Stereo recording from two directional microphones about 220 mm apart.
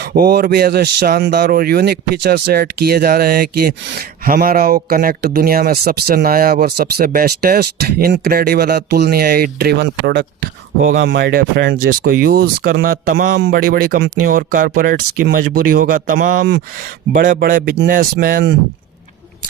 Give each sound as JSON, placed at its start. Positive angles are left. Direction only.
{"t": 0.0, "sound": "speech", "side_deg": -45}